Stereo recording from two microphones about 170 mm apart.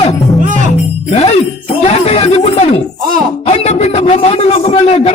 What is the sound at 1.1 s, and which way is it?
Jingle bell, 35° left (ahead or behind).